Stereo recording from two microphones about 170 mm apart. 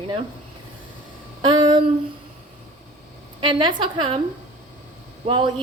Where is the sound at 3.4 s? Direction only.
30° right (ahead or behind).